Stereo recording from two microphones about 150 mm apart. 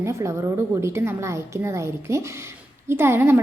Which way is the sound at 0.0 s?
20° right (ahead or behind).